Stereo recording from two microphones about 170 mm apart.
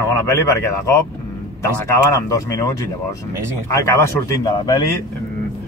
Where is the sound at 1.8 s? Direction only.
15° left (ahead or behind).